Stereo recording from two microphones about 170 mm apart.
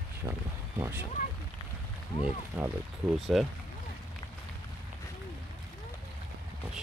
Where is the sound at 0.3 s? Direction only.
15° right (ahead or behind).